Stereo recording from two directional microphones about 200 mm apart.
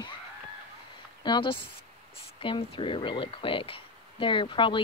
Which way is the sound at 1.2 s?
25° left (ahead or behind).